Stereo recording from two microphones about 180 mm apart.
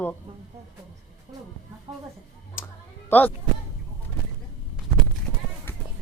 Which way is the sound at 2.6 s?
10° left (ahead or behind).